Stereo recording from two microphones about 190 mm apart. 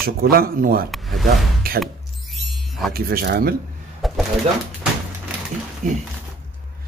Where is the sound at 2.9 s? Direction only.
55° right (ahead or behind).